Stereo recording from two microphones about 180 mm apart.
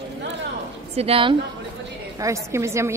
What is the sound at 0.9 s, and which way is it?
Speech, 30° right (ahead or behind).